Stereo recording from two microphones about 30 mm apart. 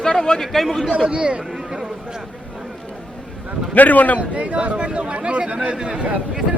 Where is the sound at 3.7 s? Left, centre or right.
Left.